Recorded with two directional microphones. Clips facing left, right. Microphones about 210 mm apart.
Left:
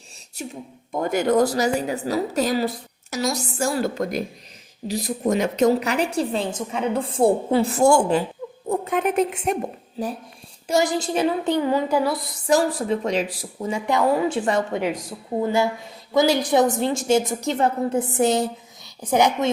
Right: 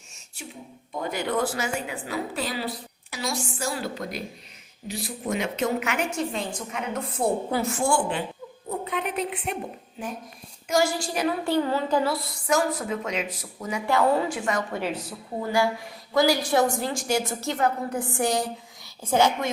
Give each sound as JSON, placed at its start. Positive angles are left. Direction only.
{"t": 0.4, "sound": "a woman's voice", "side_deg": 40}
{"t": 10.0, "sound": "a woman's voice", "side_deg": 35}
{"t": 10.7, "sound": "a woman's voice", "side_deg": 20}
{"t": 12.5, "sound": "a woman's voice", "side_deg": 35}
{"t": 14.3, "sound": "a woman's voice", "side_deg": 30}
{"t": 14.7, "sound": "a woman's voice", "side_deg": 15}